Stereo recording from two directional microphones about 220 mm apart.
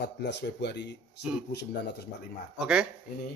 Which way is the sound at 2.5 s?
5° right (ahead or behind).